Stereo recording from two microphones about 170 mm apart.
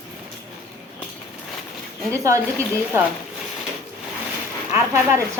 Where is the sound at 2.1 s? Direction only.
20° right (ahead or behind).